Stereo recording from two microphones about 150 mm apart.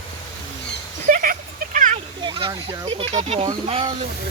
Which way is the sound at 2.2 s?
30° right (ahead or behind).